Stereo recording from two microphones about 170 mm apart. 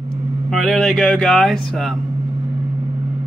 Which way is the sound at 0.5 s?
Centre (ahead or behind).